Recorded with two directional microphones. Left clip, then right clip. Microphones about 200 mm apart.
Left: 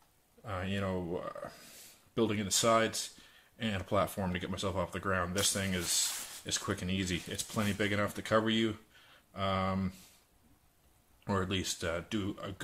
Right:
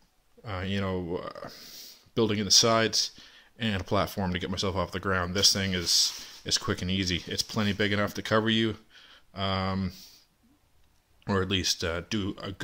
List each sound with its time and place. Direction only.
0.4 s speech: 45° right (ahead or behind)
11.2 s speech: 45° right (ahead or behind)